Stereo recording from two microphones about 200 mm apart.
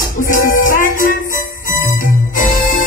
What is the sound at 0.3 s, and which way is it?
Music, 40° left (ahead or behind).